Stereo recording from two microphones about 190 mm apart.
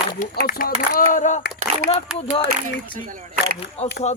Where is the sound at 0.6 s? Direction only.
45° left (ahead or behind).